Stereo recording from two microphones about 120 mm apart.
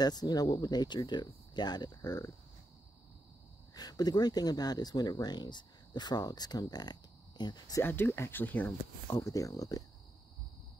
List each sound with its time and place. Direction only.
0.0 s speech: 35° left (ahead or behind)
3.7 s speech: 35° left (ahead or behind)
7.8 s speech: 20° left (ahead or behind)